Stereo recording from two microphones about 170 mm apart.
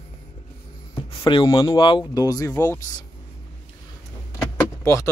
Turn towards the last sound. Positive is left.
turn(degrees=15)  # may be behind; listen again after turning